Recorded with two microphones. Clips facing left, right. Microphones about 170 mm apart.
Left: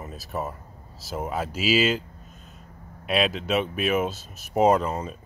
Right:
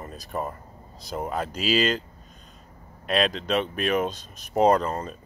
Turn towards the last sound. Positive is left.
turn(degrees=5)  # may be behind; listen again after turning